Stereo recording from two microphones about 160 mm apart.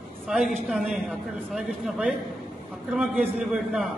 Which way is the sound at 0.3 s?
Centre (ahead or behind).